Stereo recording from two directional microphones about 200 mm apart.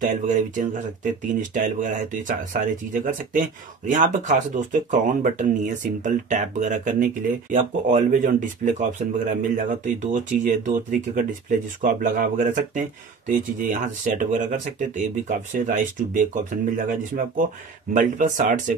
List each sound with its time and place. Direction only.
0.0 s speech: 40° right (ahead or behind)